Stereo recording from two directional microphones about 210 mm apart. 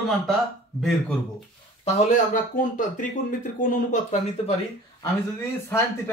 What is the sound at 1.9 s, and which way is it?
Speech, 40° left (ahead or behind).